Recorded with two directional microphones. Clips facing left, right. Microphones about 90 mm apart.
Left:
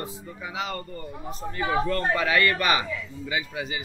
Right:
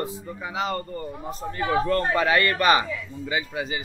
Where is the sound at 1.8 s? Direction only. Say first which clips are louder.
Right 3 dB; 40° right (ahead or behind).